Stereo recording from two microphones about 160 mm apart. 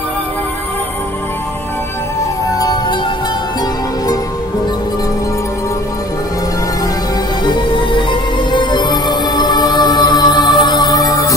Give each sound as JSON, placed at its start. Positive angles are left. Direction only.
{"t": 2.6, "sound": "music", "side_deg": 25}
{"t": 7.4, "sound": "music", "side_deg": 30}